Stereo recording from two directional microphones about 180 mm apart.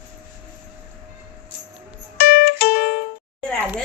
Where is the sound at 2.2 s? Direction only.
60° left (ahead or behind).